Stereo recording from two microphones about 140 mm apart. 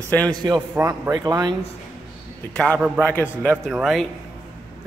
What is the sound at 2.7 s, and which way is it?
A man's voice, 5° right (ahead or behind).